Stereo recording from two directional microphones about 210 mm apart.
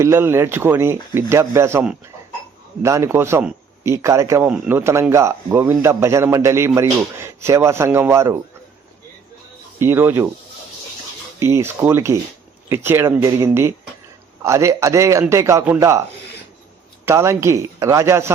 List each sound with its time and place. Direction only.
0.0 s a man's voice: 10° right (ahead or behind)
9.8 s a man's voice: 10° right (ahead or behind)
11.3 s a man's voice: 15° right (ahead or behind)
17.1 s a man's voice: 15° right (ahead or behind)